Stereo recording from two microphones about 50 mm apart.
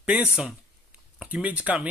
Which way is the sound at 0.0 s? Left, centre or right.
Right.